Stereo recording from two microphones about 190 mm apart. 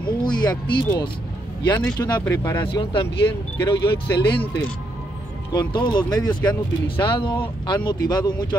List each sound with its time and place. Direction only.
0.2 s speech: 20° left (ahead or behind)
1.7 s speech: 5° left (ahead or behind)
2.0 s speech: 20° left (ahead or behind)
4.4 s speech: 5° left (ahead or behind)
5.5 s speech: 20° left (ahead or behind)